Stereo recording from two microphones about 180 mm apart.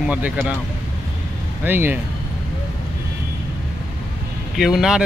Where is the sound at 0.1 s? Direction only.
10° right (ahead or behind).